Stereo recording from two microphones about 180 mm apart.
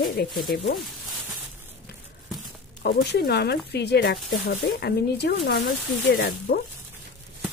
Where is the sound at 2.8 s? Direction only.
60° left (ahead or behind).